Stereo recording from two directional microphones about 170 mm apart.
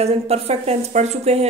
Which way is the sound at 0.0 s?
35° right (ahead or behind).